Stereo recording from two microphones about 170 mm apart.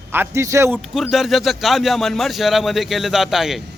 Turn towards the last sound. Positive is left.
turn(degrees=0)  # may be behind; listen again after turning